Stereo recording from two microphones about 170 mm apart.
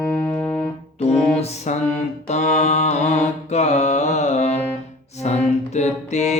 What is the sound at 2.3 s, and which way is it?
Mantra, 45° left (ahead or behind).